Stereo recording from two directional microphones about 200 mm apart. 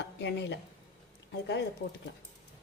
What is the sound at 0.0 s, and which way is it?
Speech, 60° left (ahead or behind).